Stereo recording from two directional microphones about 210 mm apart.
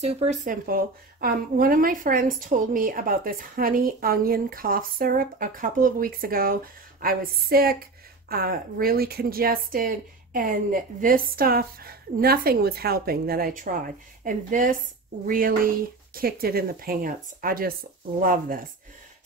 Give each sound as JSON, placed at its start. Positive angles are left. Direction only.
{"t": 0.0, "sound": "speech", "side_deg": -30}